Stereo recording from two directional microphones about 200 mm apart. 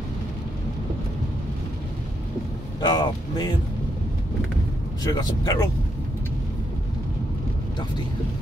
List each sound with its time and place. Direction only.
2.8 s speech: 20° left (ahead or behind)
5.0 s speech: 20° left (ahead or behind)